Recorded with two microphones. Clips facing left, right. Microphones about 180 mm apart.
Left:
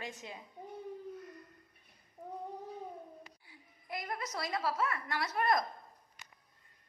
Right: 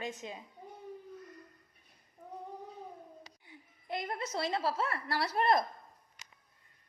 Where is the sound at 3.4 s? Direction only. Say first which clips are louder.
Right 7 dB; 25° right (ahead or behind).